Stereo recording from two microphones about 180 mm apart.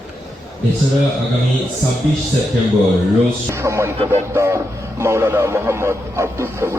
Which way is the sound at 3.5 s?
15° right (ahead or behind).